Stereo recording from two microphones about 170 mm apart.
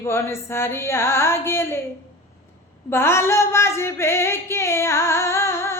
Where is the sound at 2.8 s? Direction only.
15° left (ahead or behind).